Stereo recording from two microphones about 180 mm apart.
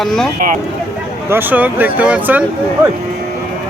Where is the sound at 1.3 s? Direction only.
10° right (ahead or behind).